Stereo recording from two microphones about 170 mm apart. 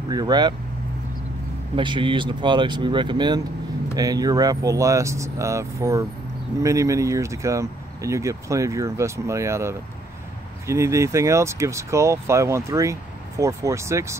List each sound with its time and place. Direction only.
0.1 s speech: 25° right (ahead or behind)
1.8 s speech: 30° right (ahead or behind)